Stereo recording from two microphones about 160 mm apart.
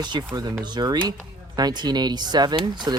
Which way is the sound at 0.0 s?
25° right (ahead or behind).